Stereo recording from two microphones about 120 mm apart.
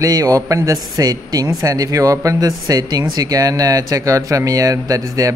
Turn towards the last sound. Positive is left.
turn(degrees=-30)  # may be behind; listen again after turning